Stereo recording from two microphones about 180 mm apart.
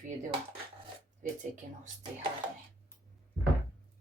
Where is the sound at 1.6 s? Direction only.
45° right (ahead or behind).